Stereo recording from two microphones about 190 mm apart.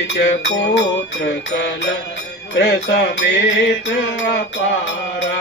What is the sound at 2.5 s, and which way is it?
Music, 65° left (ahead or behind).